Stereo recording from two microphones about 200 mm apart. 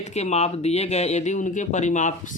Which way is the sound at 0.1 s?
35° left (ahead or behind).